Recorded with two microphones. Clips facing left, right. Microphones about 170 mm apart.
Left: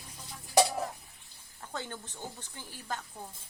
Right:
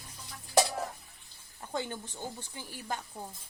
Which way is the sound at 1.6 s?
15° right (ahead or behind).